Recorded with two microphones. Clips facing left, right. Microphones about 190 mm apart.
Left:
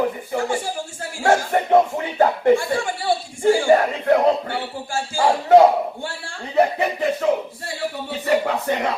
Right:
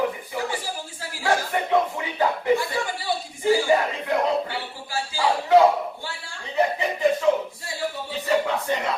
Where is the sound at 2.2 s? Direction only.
50° left (ahead or behind).